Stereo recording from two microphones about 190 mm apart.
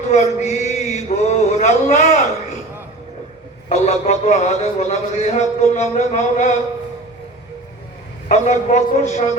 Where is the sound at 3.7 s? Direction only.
35° left (ahead or behind).